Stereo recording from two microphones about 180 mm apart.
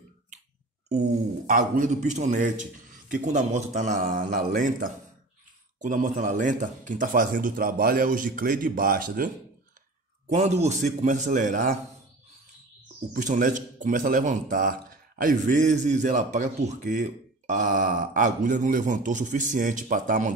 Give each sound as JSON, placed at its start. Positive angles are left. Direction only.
{"t": 1.5, "sound": "a man's voice", "side_deg": -50}
{"t": 10.3, "sound": "a man's voice", "side_deg": -40}
{"t": 13.1, "sound": "a man's voice", "side_deg": -45}